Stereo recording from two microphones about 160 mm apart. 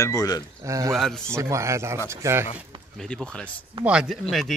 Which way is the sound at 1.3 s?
20° right (ahead or behind).